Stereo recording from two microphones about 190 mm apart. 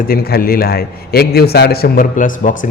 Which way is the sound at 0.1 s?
55° left (ahead or behind).